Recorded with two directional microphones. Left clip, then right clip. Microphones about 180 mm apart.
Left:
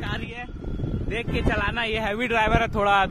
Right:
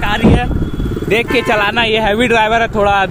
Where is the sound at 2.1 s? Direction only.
20° left (ahead or behind).